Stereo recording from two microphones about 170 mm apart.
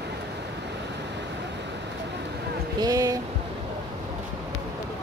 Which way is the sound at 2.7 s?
20° right (ahead or behind).